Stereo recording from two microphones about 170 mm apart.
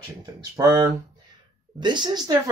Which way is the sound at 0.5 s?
20° right (ahead or behind).